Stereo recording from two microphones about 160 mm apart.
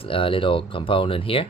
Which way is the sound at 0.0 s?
35° left (ahead or behind).